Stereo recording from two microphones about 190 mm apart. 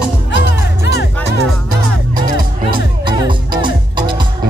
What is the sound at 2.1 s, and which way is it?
Music, 25° right (ahead or behind).